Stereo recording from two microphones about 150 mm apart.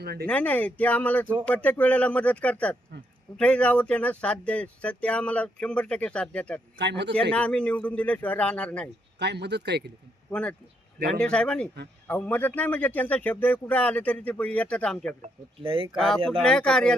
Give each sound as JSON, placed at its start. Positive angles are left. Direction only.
{"t": 0.0, "sound": "speech", "side_deg": -90}
{"t": 0.3, "sound": "speech", "side_deg": 10}
{"t": 9.3, "sound": "speech", "side_deg": -90}
{"t": 11.1, "sound": "speech", "side_deg": 5}
{"t": 15.6, "sound": "speech", "side_deg": -35}
{"t": 16.0, "sound": "speech", "side_deg": 0}